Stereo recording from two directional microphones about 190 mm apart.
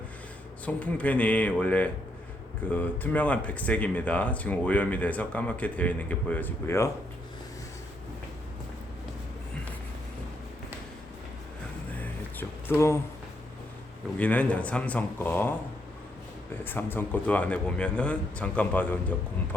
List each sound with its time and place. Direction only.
0.6 s speech: 5° left (ahead or behind)
11.9 s a sound: 10° left (ahead or behind)
14.2 s speech: 5° left (ahead or behind)
16.6 s speech: 10° left (ahead or behind)